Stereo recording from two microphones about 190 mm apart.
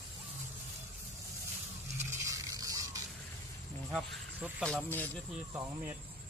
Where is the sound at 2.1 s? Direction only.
15° right (ahead or behind).